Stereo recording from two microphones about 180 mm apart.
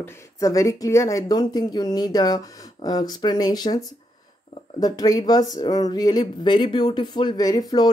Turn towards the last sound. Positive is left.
turn(degrees=20)  # may be behind; listen again after turning